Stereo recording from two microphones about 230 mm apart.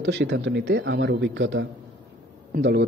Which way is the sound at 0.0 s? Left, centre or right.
Right.